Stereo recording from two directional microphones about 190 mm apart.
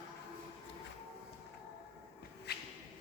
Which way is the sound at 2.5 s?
60° left (ahead or behind).